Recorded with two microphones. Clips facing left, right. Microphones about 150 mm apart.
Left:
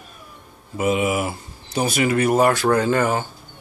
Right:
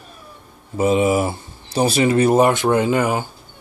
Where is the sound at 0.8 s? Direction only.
30° right (ahead or behind); by 3.3 s 15° right (ahead or behind).